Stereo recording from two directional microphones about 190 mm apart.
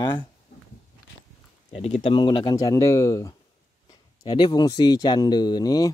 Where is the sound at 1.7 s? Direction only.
35° left (ahead or behind).